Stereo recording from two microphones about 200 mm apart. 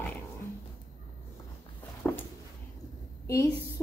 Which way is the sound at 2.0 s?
10° left (ahead or behind).